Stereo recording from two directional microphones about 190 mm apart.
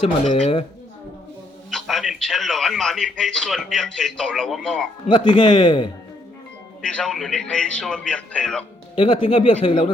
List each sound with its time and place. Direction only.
1.7 s a man's voice: centre (ahead or behind)
5.0 s speech: 25° left (ahead or behind)
6.8 s a man's voice: 5° left (ahead or behind)
9.0 s speech: 30° left (ahead or behind)